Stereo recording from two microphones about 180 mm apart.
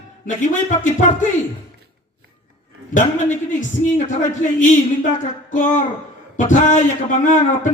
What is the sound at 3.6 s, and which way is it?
Speech, 45° left (ahead or behind).